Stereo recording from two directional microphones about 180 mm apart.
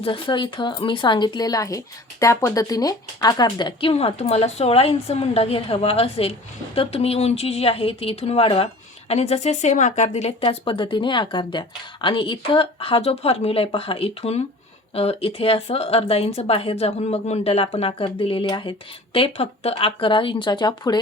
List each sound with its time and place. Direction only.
0.0 s speech: 30° left (ahead or behind)